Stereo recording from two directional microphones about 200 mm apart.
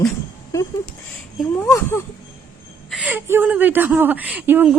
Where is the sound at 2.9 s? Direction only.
5° right (ahead or behind).